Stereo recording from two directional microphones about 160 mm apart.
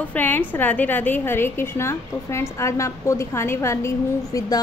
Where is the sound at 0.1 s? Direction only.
10° left (ahead or behind).